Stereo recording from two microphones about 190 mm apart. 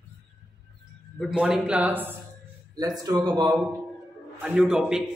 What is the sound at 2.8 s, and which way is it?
Speech, 20° right (ahead or behind).